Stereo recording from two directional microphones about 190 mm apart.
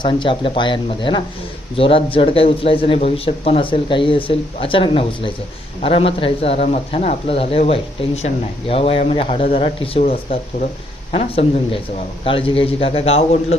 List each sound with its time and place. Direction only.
0.0 s speech: 25° left (ahead or behind)